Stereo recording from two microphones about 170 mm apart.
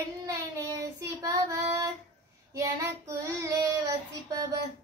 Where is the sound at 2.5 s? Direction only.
20° right (ahead or behind).